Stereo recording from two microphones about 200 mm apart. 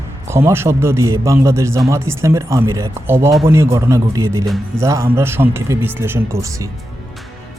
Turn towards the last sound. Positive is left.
turn(degrees=-15)  # may be behind; listen again after turning